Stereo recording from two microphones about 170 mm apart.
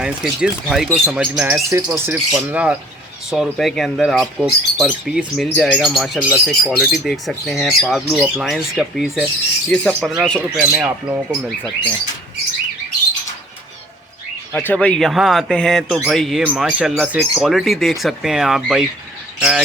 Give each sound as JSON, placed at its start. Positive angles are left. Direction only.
{"t": 0.0, "sound": "speech", "side_deg": -5}
{"t": 14.5, "sound": "speech", "side_deg": 10}